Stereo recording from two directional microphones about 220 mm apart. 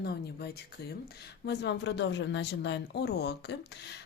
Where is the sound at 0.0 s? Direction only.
45° left (ahead or behind).